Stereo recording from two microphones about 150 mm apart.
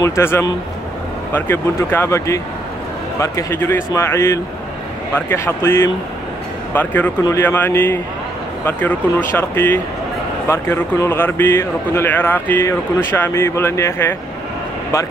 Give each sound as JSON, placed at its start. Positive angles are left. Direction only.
{"t": 0.0, "sound": "speech", "side_deg": 20}
{"t": 9.4, "sound": "speech", "side_deg": 15}